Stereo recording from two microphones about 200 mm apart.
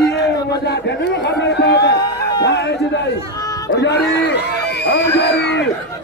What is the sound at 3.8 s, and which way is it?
Speech, 60° left (ahead or behind).